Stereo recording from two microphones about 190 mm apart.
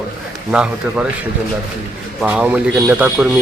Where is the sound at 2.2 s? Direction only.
5° right (ahead or behind).